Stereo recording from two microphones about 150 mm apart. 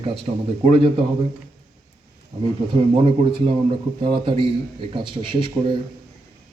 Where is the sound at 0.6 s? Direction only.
40° right (ahead or behind).